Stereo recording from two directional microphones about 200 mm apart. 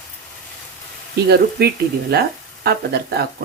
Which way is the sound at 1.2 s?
55° right (ahead or behind).